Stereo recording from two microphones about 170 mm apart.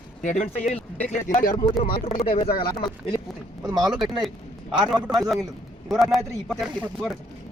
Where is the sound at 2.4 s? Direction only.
60° left (ahead or behind).